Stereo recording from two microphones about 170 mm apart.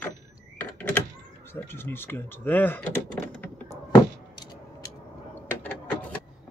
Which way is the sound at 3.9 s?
25° left (ahead or behind).